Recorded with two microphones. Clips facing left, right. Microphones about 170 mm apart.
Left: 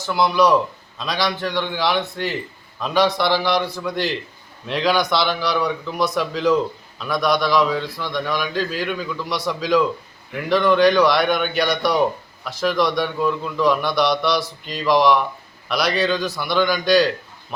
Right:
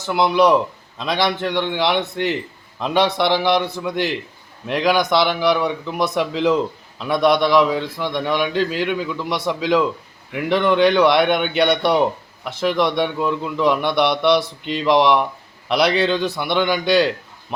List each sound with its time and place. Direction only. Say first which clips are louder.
0.0 s a man's voice: right 2 dB; 20° right (ahead or behind)